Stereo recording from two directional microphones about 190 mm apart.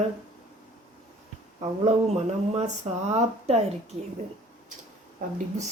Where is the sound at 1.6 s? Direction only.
35° right (ahead or behind).